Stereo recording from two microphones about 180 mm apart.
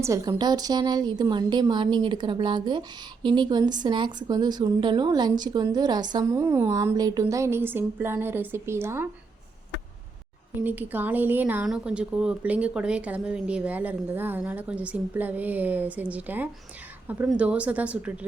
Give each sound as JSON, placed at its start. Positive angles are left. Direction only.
{"t": 0.0, "sound": "speech", "side_deg": -20}
{"t": 10.6, "sound": "speech", "side_deg": -10}